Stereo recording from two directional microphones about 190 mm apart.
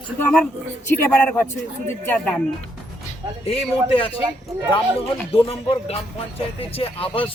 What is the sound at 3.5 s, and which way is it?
Speech, 30° left (ahead or behind).